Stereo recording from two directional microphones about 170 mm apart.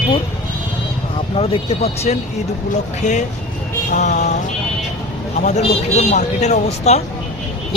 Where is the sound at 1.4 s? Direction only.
35° left (ahead or behind).